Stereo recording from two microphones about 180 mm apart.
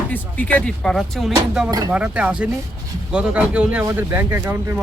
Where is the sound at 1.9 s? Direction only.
5° right (ahead or behind).